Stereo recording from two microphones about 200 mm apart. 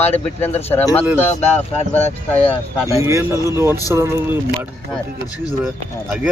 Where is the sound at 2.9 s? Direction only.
15° right (ahead or behind).